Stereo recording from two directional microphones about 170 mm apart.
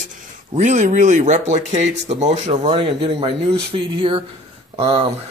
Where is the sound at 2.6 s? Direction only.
30° right (ahead or behind).